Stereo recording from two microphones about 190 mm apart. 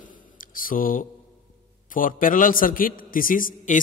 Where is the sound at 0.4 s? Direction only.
45° left (ahead or behind).